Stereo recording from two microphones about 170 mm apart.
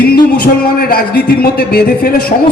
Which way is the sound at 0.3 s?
60° left (ahead or behind).